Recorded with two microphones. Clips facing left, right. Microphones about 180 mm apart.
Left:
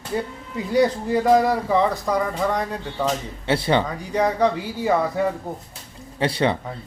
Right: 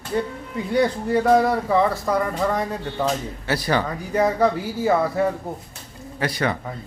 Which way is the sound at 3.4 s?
25° left (ahead or behind).